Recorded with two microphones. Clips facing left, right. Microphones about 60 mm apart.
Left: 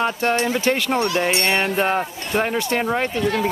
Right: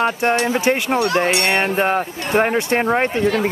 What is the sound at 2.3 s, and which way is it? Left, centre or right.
Speech, right.